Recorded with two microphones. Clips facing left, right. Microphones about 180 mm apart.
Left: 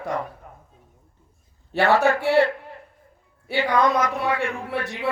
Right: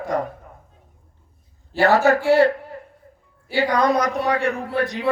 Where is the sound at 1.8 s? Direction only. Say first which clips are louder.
Right 3 dB; 40° right (ahead or behind).